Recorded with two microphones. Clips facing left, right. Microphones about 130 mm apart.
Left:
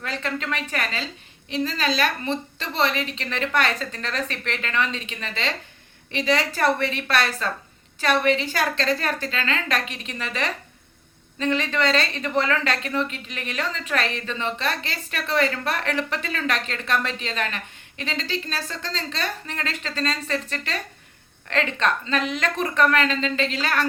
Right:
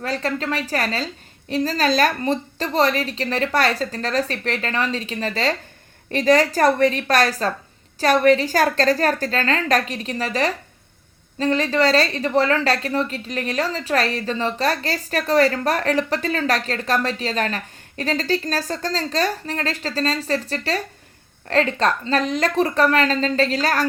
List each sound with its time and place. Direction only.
0.0 s a woman's voice: 35° right (ahead or behind)